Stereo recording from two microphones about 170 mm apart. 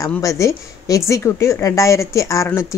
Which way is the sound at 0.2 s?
20° left (ahead or behind).